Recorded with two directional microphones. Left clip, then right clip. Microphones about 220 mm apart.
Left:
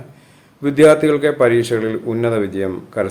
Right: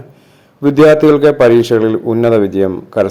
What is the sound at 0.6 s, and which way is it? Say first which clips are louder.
A man's voice: right 4 dB; 25° right (ahead or behind).